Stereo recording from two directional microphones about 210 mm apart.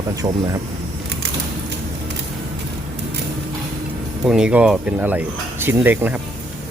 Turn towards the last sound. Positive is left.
turn(degrees=-10)  # may be behind; listen again after turning